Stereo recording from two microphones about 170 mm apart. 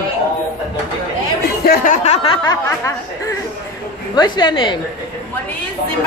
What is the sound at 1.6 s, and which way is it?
Speech, 55° left (ahead or behind).